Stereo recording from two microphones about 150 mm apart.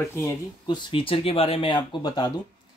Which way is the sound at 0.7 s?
35° left (ahead or behind).